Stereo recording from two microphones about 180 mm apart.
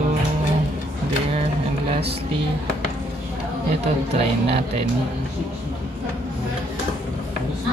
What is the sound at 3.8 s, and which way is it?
Speech, 35° right (ahead or behind).